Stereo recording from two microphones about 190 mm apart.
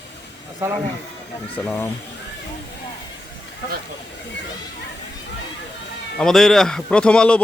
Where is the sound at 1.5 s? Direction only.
10° left (ahead or behind).